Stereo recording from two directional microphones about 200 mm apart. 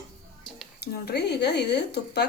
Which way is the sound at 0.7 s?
55° left (ahead or behind).